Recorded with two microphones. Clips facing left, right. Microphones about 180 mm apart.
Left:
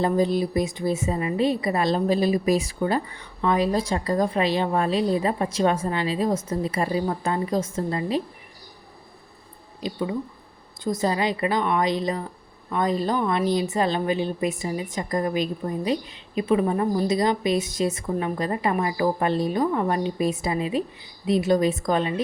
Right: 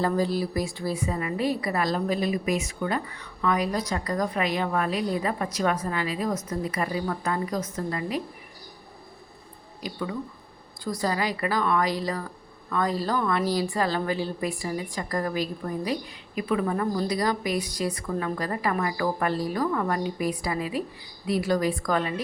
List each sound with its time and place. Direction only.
0.0 s a woman's voice: 20° left (ahead or behind)
9.8 s a woman's voice: 20° left (ahead or behind)